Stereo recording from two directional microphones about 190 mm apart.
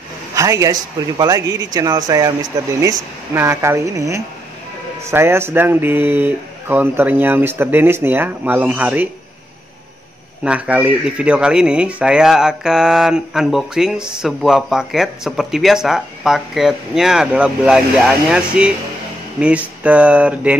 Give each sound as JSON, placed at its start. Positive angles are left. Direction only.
{"t": 0.4, "sound": "speech", "side_deg": -15}
{"t": 10.4, "sound": "speech", "side_deg": -5}